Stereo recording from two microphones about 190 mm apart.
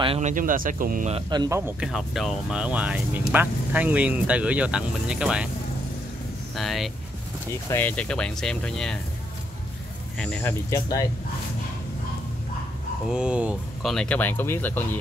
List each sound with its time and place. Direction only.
0.0 s speech: 30° right (ahead or behind)
0.3 s speech: 45° right (ahead or behind)
1.1 s speech: 20° right (ahead or behind)
1.8 s speech: centre (ahead or behind)
6.5 s speech: centre (ahead or behind)
10.1 s speech: 5° left (ahead or behind)
10.7 s speech: 20° left (ahead or behind)
13.1 s speech: 5° right (ahead or behind)
13.9 s speech: 5° left (ahead or behind)